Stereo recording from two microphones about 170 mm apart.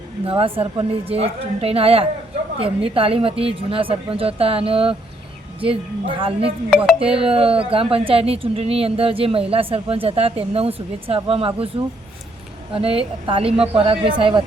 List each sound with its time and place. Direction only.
0.3 s a woman's voice: 35° right (ahead or behind)
6.7 s music: centre (ahead or behind)
7.0 s a woman's voice: 35° right (ahead or behind)
12.7 s a woman's voice: 35° right (ahead or behind)